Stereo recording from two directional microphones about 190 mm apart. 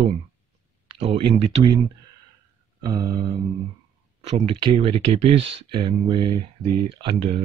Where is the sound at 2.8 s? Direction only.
20° right (ahead or behind).